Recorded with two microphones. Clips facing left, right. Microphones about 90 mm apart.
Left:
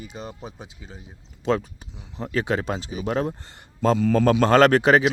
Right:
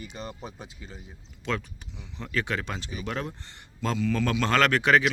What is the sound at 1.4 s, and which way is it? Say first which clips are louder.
Speech: left 8 dB; 35° left (ahead or behind).